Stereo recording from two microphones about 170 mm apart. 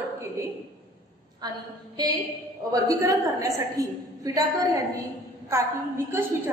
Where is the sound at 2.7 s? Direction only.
20° right (ahead or behind).